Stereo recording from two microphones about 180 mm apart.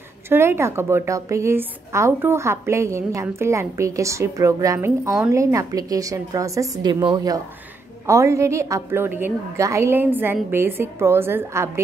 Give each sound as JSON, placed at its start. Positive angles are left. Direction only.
{"t": 0.3, "sound": "a woman's voice", "side_deg": -15}